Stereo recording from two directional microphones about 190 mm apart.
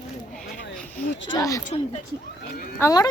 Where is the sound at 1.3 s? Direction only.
15° left (ahead or behind).